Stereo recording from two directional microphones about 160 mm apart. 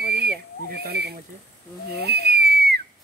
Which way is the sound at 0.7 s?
85° right.